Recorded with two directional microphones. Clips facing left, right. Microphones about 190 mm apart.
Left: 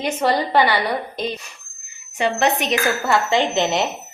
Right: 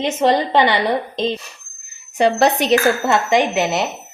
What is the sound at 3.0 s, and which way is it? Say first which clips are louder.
Speech: right 2 dB; 20° right (ahead or behind).